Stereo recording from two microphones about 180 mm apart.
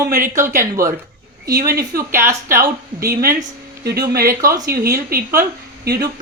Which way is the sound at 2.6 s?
55° right (ahead or behind).